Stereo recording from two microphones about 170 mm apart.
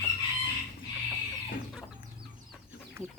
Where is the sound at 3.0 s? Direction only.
15° right (ahead or behind).